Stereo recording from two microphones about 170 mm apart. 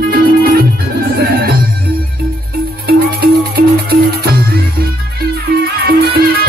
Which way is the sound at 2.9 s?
65° right (ahead or behind).